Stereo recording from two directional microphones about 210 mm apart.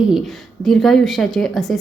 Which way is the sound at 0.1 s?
Centre (ahead or behind).